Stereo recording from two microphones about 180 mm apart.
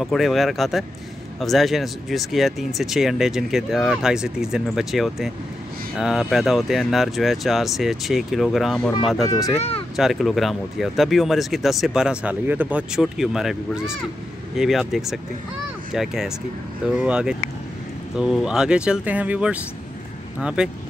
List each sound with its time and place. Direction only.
0.0 s speech: centre (ahead or behind)
9.3 s speech: 15° left (ahead or behind)
9.6 s speech: 35° left (ahead or behind)
9.9 s speech: centre (ahead or behind)